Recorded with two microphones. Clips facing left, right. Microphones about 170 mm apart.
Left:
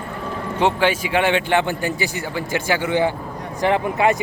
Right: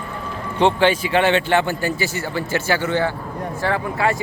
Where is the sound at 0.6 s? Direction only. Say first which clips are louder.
Right 2 dB; 10° left (ahead or behind).